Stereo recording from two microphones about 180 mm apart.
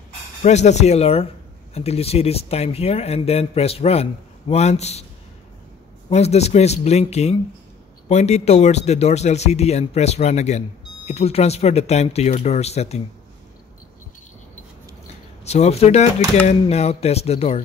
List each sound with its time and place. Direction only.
0.4 s speech: 40° left (ahead or behind)
6.0 s speech: 35° left (ahead or behind)
15.4 s speech: 35° left (ahead or behind)